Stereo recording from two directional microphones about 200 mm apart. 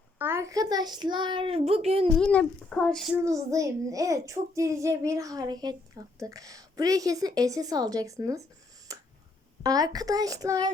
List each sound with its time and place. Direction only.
0.2 s a child's voice: 10° right (ahead or behind); by 2.0 s 30° right (ahead or behind)
2.1 s speech: 5° left (ahead or behind)
3.2 s a child's voice: 15° right (ahead or behind)
8.9 s a sound: 15° right (ahead or behind)
9.6 s a child's voice: 20° right (ahead or behind)